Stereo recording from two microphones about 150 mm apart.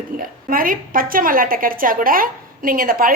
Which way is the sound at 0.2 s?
70° right (ahead or behind).